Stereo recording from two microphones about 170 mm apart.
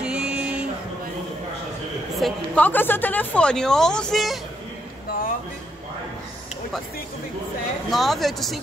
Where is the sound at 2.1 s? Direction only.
5° left (ahead or behind).